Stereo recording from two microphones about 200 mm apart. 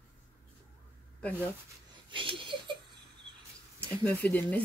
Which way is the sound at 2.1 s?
25° right (ahead or behind).